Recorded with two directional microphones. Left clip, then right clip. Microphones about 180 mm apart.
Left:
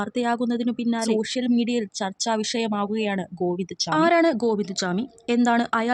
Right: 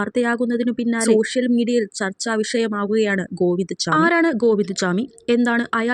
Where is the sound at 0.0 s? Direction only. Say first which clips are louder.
Right 4 dB; 15° right (ahead or behind).